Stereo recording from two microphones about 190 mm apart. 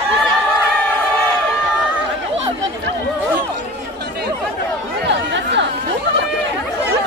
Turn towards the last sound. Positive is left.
turn(degrees=-65)  # may be behind; listen again after turning